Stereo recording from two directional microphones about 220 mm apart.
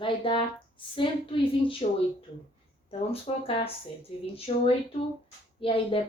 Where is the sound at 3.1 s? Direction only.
25° left (ahead or behind).